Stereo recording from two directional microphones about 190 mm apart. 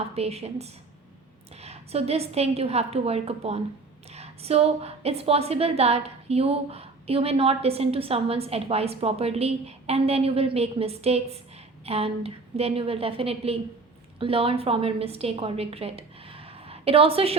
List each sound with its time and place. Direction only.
0.0 s a woman's voice: 30° right (ahead or behind)